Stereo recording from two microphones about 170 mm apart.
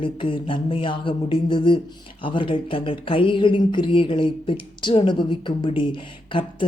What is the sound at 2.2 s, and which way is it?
Speech, 30° left (ahead or behind).